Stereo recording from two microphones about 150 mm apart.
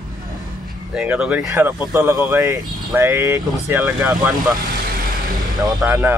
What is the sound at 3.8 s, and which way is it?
Speech, 5° right (ahead or behind).